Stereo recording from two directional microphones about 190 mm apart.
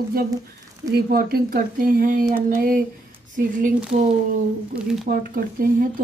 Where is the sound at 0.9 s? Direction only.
55° right (ahead or behind).